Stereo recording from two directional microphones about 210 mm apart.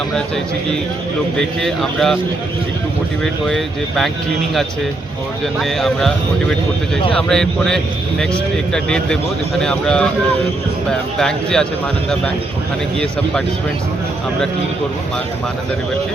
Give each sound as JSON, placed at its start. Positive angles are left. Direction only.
{"t": 1.4, "sound": "speech", "side_deg": 0}
{"t": 3.4, "sound": "speech", "side_deg": 0}
{"t": 5.5, "sound": "speech", "side_deg": 0}
{"t": 11.2, "sound": "speech", "side_deg": 5}